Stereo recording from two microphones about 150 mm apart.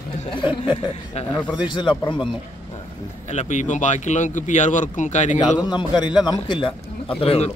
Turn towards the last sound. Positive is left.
turn(degrees=40)  # may be behind; listen again after turning